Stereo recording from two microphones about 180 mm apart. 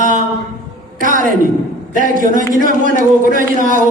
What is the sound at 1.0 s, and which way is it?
A man's voice, 50° right (ahead or behind).